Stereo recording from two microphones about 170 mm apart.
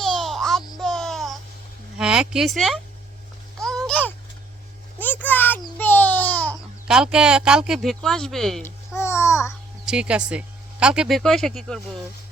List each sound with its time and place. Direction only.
0.0 s babbling: centre (ahead or behind)
2.0 s speech: 5° right (ahead or behind)
3.6 s babbling: 5° left (ahead or behind)
6.8 s speech: 5° right (ahead or behind)
9.0 s babbling: 15° left (ahead or behind)
9.8 s speech: 5° right (ahead or behind)